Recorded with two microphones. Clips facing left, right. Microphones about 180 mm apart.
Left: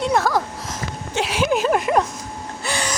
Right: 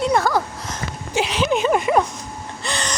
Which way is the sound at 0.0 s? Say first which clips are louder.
Right 1 dB; centre (ahead or behind).